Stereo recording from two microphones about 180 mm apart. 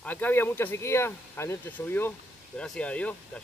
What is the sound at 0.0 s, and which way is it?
Speech, 10° left (ahead or behind).